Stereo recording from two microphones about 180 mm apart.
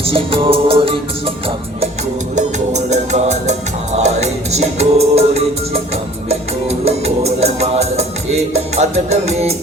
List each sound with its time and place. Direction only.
0.0 s music: 30° right (ahead or behind)
2.3 s music: 40° right (ahead or behind)